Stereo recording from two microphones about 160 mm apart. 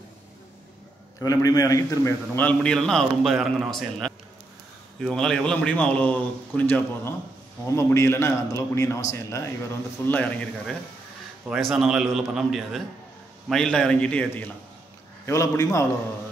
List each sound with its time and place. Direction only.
1.2 s a man's voice: 25° left (ahead or behind)
11.4 s a man's voice: 5° right (ahead or behind); by 15.8 s 20° left (ahead or behind)